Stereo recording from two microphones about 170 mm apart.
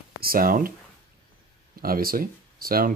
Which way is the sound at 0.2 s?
60° right (ahead or behind).